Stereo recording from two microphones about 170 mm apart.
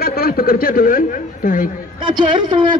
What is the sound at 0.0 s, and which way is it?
A woman's voice, 60° left (ahead or behind).